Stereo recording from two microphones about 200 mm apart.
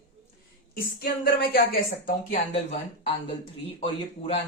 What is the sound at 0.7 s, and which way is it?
Speech, 50° left (ahead or behind).